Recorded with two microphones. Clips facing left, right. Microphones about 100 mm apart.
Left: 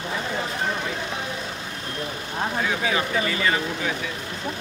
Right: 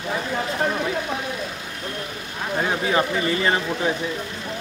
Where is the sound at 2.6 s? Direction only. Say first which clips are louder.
Right 5 dB; 35° right (ahead or behind).